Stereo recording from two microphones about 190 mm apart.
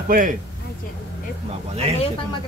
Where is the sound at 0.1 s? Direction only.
45° right (ahead or behind).